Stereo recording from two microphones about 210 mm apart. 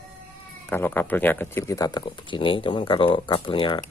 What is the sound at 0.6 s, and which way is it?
Speech, 10° left (ahead or behind).